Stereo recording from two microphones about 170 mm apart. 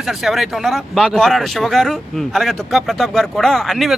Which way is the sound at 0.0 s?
Centre (ahead or behind).